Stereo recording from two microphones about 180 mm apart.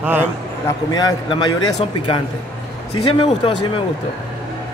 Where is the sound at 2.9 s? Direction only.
30° left (ahead or behind).